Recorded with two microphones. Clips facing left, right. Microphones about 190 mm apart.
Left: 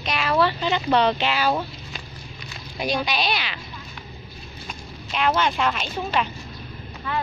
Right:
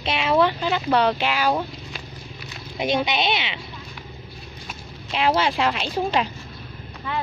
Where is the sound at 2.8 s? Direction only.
20° right (ahead or behind).